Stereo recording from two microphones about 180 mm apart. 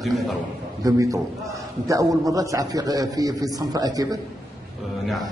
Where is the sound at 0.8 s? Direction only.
15° right (ahead or behind).